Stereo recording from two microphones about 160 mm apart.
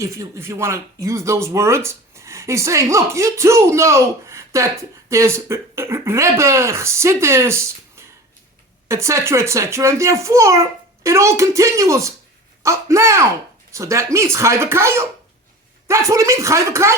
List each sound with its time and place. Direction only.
0.0 s speech: 15° right (ahead or behind)